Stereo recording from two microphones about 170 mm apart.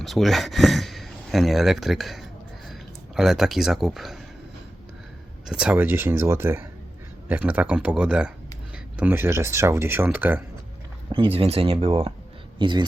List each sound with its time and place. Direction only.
0.0 s speech: centre (ahead or behind)
5.5 s speech: 5° right (ahead or behind)
11.1 s speech: 30° right (ahead or behind)